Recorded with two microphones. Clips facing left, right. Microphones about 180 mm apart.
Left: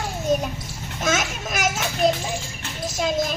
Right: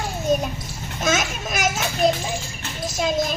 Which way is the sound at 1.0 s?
20° right (ahead or behind).